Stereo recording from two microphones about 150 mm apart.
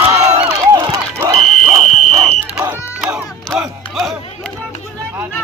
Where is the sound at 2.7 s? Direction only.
5° right (ahead or behind).